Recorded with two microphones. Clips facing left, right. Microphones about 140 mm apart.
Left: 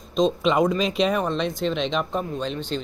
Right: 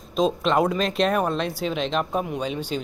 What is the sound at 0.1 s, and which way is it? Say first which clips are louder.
Speech: left 1 dB; centre (ahead or behind).